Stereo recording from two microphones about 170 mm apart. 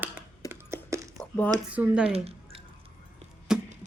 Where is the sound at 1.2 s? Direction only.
10° left (ahead or behind).